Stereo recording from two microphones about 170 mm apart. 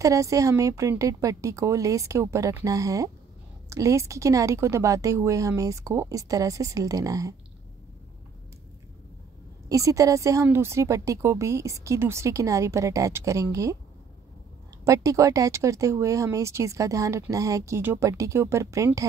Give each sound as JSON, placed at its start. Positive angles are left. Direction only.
{"t": 0.0, "sound": "speech", "side_deg": -20}
{"t": 9.7, "sound": "a woman's voice", "side_deg": -20}
{"t": 14.9, "sound": "speech", "side_deg": -20}